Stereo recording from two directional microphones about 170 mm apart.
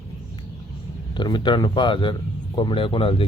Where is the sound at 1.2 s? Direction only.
25° left (ahead or behind).